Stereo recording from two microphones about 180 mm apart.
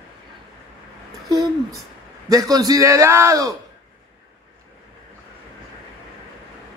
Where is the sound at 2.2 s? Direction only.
20° right (ahead or behind).